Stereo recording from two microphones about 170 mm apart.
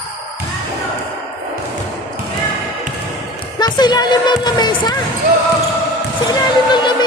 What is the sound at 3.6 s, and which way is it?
Speech, 25° left (ahead or behind).